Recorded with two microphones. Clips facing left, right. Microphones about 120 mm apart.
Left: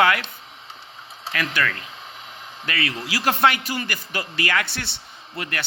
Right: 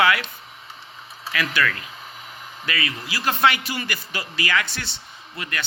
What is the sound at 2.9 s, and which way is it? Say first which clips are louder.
Speech: left 5 dB; 85° left.